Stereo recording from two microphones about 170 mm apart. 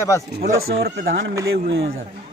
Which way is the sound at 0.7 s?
65° right (ahead or behind).